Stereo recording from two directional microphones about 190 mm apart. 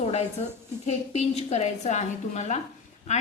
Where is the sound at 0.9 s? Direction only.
35° left (ahead or behind).